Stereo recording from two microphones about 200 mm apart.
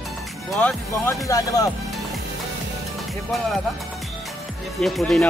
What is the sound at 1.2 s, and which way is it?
Speech, 15° left (ahead or behind).